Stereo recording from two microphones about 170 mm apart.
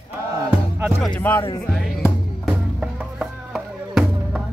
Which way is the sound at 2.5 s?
5° right (ahead or behind).